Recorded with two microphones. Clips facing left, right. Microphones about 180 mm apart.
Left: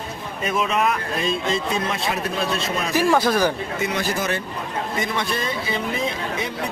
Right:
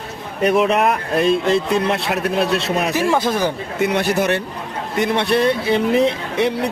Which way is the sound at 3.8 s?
65° right (ahead or behind).